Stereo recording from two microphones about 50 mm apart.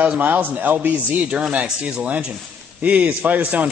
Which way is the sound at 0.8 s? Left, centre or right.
Right.